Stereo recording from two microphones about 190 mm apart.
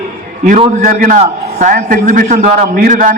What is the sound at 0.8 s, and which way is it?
A man's voice, 45° right (ahead or behind).